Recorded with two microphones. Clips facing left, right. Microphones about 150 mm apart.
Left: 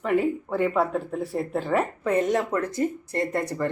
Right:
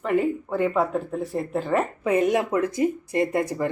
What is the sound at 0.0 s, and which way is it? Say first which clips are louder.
Speech: even; centre (ahead or behind).